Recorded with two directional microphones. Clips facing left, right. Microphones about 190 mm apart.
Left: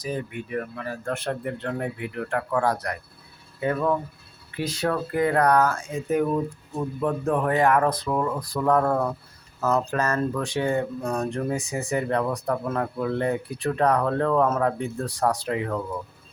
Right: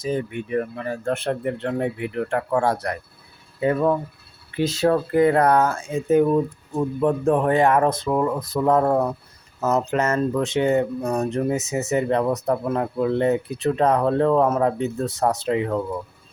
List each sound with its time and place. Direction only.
0.0 s speech: 25° right (ahead or behind)